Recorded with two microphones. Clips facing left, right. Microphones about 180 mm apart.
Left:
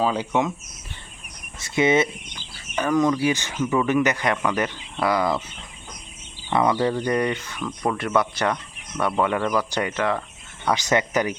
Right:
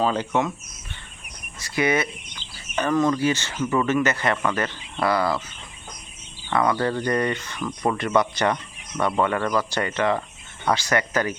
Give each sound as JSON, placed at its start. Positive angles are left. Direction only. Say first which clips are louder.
{"t": 0.0, "sound": "speech", "louder": "even", "side_deg": 10}
{"t": 1.5, "sound": "speech", "louder": "left 3 dB", "side_deg": 25}
{"t": 2.7, "sound": "speech", "louder": "left 1 dB", "side_deg": 10}
{"t": 6.5, "sound": "speech", "louder": "left 1 dB", "side_deg": 15}
{"t": 10.8, "sound": "speech", "louder": "left 2 dB", "side_deg": 20}